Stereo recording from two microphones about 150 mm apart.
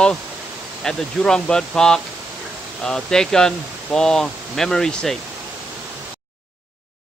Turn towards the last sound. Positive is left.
turn(degrees=5)  # may be behind; listen again after turning